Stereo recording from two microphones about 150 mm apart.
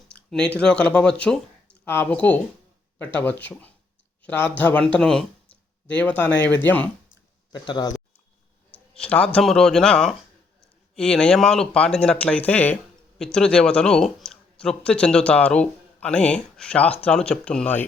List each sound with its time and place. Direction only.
0.1 s speech: 5° left (ahead or behind)
7.5 s speech: 30° left (ahead or behind)
8.7 s speech: 10° left (ahead or behind)